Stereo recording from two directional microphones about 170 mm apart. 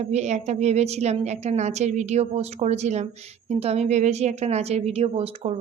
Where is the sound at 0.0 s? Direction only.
40° right (ahead or behind).